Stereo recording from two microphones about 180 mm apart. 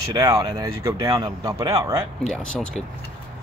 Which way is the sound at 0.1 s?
20° right (ahead or behind).